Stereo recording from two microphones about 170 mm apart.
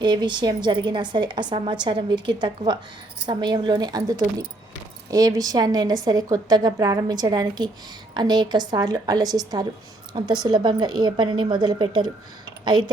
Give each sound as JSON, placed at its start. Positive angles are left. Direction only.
{"t": 0.0, "sound": "a woman's voice", "side_deg": -25}